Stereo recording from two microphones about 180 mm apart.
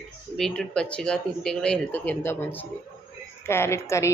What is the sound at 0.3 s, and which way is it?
Speech, centre (ahead or behind).